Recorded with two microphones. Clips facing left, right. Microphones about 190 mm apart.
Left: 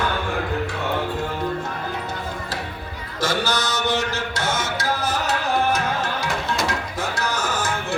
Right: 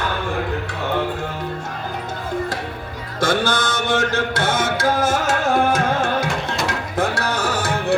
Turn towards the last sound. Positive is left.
turn(degrees=-35)  # may be behind; listen again after turning